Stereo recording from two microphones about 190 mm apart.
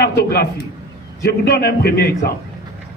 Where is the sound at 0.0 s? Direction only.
55° left (ahead or behind).